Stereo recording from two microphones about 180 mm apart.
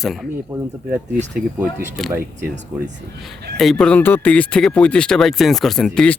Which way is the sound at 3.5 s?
Centre (ahead or behind).